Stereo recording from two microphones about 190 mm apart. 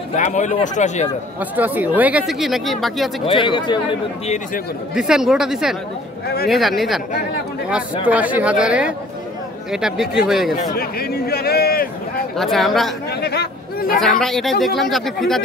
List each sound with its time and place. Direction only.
0.1 s speech: 40° left (ahead or behind)
1.4 s speech: 10° right (ahead or behind)
3.3 s speech: 25° left (ahead or behind)
4.9 s speech: 5° right (ahead or behind)
6.2 s a man's voice: 55° left (ahead or behind)
6.5 s speech: centre (ahead or behind)
8.1 s a woman's voice: 10° right (ahead or behind)
10.7 s speech: 55° left (ahead or behind)
12.4 s speech: centre (ahead or behind)
13.1 s speech: 60° left (ahead or behind)
14.2 s speech: centre (ahead or behind)